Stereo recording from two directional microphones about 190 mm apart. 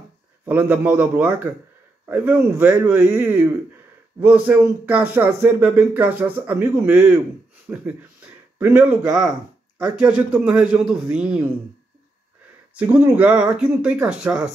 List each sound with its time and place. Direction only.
0.5 s speech: 10° right (ahead or behind)
10.0 s a man's voice: 5° right (ahead or behind)
12.7 s speech: 10° right (ahead or behind)